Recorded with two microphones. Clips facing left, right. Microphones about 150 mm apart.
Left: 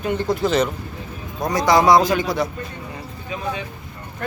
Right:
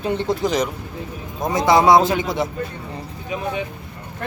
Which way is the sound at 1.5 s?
20° right (ahead or behind).